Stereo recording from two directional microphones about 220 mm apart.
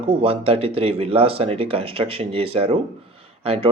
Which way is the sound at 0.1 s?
25° right (ahead or behind).